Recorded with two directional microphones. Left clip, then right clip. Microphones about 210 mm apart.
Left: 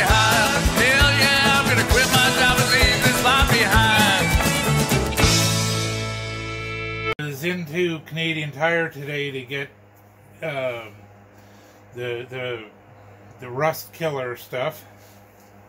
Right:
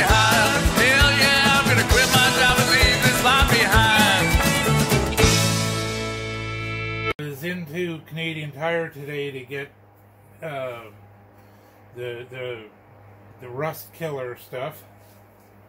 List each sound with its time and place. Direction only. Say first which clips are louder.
0.0 s music: even; centre (ahead or behind)
7.2 s a sound: left 4 dB; 40° left (ahead or behind)
12.0 s speech: left 3 dB; 40° left (ahead or behind)